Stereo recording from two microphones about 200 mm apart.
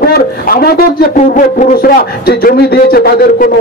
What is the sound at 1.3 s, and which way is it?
A man's voice, 45° left (ahead or behind).